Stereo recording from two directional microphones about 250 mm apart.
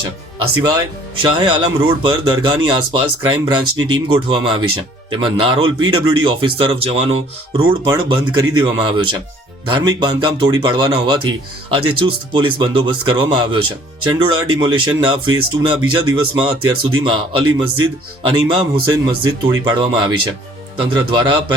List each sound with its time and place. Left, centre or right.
1.2 s speech: centre